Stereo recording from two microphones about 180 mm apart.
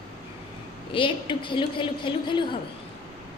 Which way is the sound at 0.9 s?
30° left (ahead or behind).